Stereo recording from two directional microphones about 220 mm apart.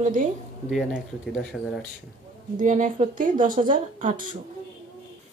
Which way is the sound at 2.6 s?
35° right (ahead or behind).